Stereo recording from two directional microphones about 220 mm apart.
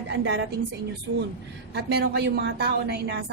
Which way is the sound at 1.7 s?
45° right (ahead or behind).